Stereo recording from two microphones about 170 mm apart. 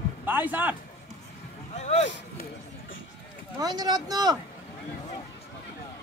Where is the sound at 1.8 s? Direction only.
40° left (ahead or behind).